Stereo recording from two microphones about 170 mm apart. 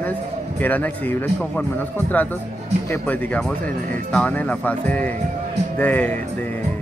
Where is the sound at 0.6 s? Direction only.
10° left (ahead or behind).